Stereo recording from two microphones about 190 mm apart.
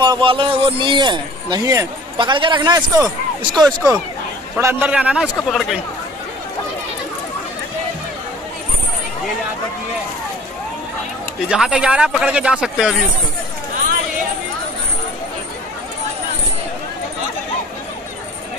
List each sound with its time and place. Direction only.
0.0 s a man's voice: 25° right (ahead or behind)
3.6 s a man's voice: 5° right (ahead or behind)
11.4 s speech: 5° right (ahead or behind)